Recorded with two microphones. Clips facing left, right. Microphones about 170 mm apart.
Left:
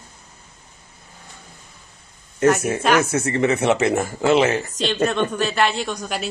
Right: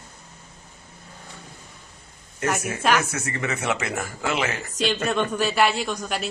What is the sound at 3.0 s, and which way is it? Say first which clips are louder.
Speech: left 8 dB; 30° left (ahead or behind).